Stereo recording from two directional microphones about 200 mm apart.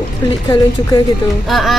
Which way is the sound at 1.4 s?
Centre (ahead or behind).